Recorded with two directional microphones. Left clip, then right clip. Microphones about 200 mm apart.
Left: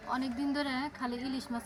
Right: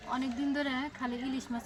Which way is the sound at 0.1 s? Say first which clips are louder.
Even; 5° right (ahead or behind).